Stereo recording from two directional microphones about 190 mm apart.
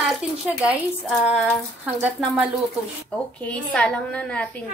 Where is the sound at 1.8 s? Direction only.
10° right (ahead or behind).